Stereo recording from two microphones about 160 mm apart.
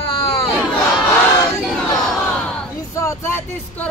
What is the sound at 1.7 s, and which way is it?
Crowd, centre (ahead or behind).